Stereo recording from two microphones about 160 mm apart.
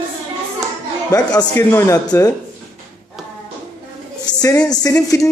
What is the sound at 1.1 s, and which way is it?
Speech, 20° left (ahead or behind).